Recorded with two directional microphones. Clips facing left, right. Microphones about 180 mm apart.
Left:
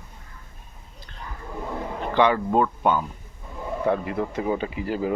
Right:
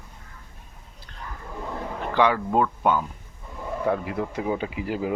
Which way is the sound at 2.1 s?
5° right (ahead or behind).